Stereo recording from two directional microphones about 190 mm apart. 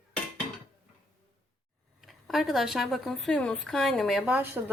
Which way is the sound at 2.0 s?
Centre (ahead or behind).